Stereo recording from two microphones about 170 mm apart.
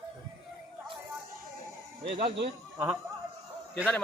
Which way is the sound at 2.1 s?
60° right (ahead or behind).